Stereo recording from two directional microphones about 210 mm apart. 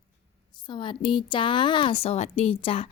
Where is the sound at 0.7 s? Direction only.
25° left (ahead or behind).